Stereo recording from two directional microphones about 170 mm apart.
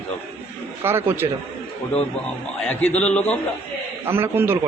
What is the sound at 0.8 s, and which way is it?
Speech, 15° right (ahead or behind).